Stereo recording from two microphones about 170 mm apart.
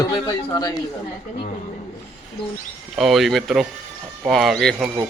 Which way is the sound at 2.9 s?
Centre (ahead or behind).